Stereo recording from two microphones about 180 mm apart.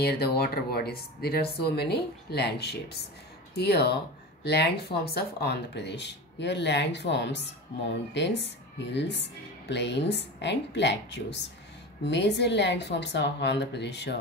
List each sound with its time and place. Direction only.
0.0 s speech: 60° left (ahead or behind)